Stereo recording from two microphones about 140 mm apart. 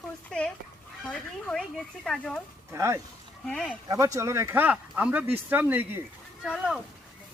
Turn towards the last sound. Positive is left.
turn(degrees=-5)  # may be behind; listen again after turning